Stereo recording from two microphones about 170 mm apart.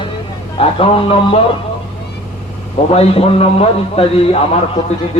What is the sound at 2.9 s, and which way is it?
A man's voice, 35° left (ahead or behind).